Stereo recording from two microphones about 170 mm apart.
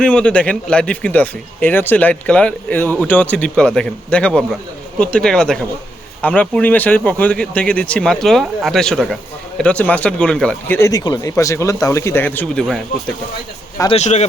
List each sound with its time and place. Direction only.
0.0 s speech: 5° left (ahead or behind)
13.9 s speech: 40° left (ahead or behind)